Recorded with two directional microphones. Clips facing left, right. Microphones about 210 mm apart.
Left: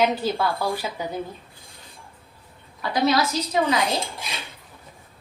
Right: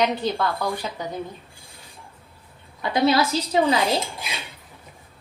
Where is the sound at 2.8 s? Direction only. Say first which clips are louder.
Right 2 dB; 25° right (ahead or behind).